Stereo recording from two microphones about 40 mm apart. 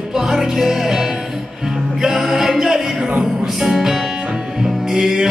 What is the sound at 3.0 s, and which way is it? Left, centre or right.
Music, right.